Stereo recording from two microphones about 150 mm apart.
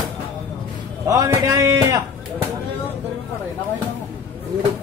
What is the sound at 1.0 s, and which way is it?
Speech, 25° right (ahead or behind).